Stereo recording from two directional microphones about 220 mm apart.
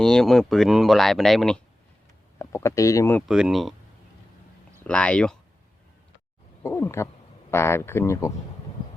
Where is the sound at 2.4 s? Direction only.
10° left (ahead or behind).